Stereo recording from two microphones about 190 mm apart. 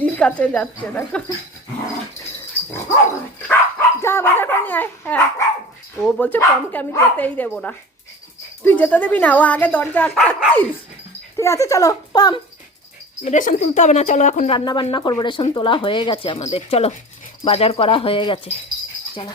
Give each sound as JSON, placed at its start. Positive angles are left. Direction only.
{"t": 0.0, "sound": "speech", "side_deg": 5}
{"t": 3.3, "sound": "dog", "side_deg": 10}
{"t": 6.0, "sound": "speech", "side_deg": 5}
{"t": 13.2, "sound": "a woman's voice", "side_deg": 45}
{"t": 14.5, "sound": "speech", "side_deg": 25}